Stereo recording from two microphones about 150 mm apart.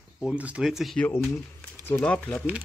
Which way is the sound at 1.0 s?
15° left (ahead or behind).